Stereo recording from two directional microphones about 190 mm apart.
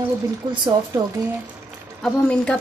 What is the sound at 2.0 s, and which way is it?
Speech, 5° left (ahead or behind).